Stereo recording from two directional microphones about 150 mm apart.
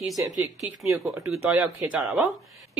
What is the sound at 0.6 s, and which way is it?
Speech, 20° right (ahead or behind).